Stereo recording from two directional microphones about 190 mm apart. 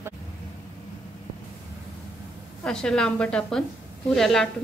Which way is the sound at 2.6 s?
5° left (ahead or behind).